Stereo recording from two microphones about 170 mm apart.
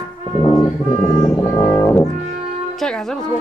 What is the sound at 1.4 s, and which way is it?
Music, 20° left (ahead or behind).